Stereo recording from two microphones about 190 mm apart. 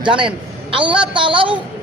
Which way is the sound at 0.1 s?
5° right (ahead or behind).